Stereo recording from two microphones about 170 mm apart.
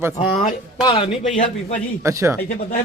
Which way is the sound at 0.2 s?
35° left (ahead or behind).